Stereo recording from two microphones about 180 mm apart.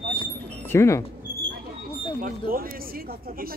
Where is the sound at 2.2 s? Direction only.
55° right (ahead or behind).